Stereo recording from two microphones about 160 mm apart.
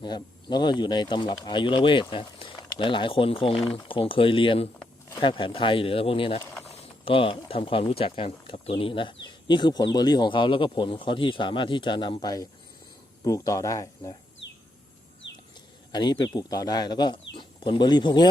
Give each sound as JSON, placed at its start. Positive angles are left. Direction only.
{"t": 0.0, "sound": "speech", "side_deg": 25}
{"t": 6.4, "sound": "mechanisms", "side_deg": 15}
{"t": 7.0, "sound": "speech", "side_deg": 35}
{"t": 15.9, "sound": "speech", "side_deg": 25}